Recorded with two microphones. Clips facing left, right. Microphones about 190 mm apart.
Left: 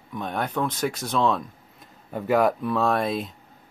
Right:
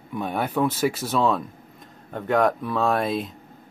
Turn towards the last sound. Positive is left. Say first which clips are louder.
# right 1 dB
turn(degrees=0)  # may be behind; listen again after turning